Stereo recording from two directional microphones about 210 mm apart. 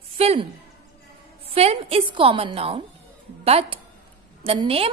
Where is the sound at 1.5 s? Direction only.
30° right (ahead or behind).